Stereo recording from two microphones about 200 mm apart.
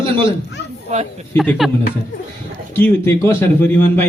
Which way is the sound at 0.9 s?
35° right (ahead or behind).